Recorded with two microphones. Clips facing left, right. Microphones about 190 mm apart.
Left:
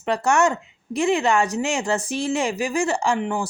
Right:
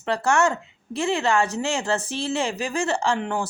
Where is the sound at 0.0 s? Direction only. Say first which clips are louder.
Left 2 dB; 15° left (ahead or behind).